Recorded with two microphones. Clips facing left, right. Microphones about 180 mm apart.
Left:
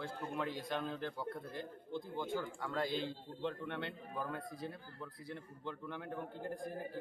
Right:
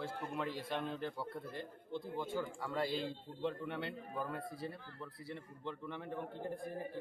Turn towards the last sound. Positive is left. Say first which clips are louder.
# even
turn(degrees=0)  # may be behind; listen again after turning